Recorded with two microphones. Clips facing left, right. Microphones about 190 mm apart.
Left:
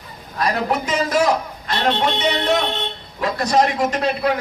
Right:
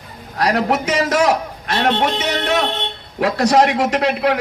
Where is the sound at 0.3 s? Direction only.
80° right.